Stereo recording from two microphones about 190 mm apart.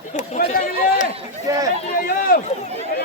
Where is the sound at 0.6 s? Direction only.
50° left (ahead or behind).